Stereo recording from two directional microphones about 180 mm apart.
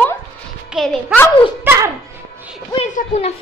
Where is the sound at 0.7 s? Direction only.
Centre (ahead or behind).